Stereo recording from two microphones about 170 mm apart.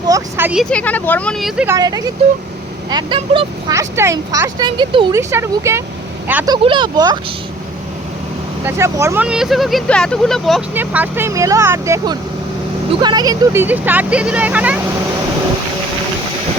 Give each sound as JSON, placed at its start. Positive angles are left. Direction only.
{"t": 0.1, "sound": "speech", "side_deg": -10}
{"t": 0.6, "sound": "speech", "side_deg": 5}
{"t": 1.6, "sound": "speech", "side_deg": -20}
{"t": 5.1, "sound": "speech", "side_deg": -15}
{"t": 6.4, "sound": "speech", "side_deg": -25}
{"t": 8.6, "sound": "speech", "side_deg": -15}
{"t": 9.2, "sound": "speech", "side_deg": -5}
{"t": 10.8, "sound": "speech", "side_deg": -10}
{"t": 12.9, "sound": "speech", "side_deg": -25}